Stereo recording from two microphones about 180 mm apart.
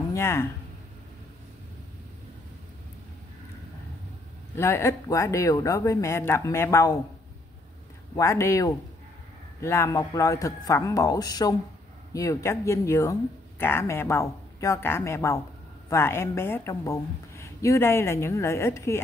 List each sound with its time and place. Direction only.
0.1 s speech: 15° left (ahead or behind)
4.6 s speech: 15° left (ahead or behind)
8.2 s speech: 15° left (ahead or behind)